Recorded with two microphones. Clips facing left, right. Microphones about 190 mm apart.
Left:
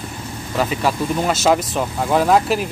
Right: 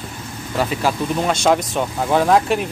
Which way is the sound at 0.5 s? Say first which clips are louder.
Even; centre (ahead or behind).